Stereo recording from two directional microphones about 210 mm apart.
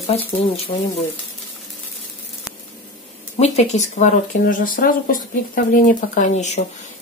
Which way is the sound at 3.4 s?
30° left (ahead or behind).